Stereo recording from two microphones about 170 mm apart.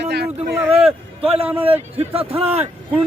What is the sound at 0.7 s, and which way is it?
A man's voice, 35° right (ahead or behind).